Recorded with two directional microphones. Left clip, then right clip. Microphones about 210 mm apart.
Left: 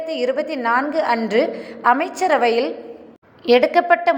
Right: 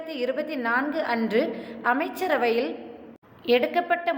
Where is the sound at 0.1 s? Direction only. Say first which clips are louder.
Left 6 dB; 10° left (ahead or behind).